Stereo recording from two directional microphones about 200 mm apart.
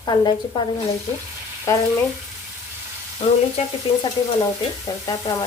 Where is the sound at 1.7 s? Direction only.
15° left (ahead or behind).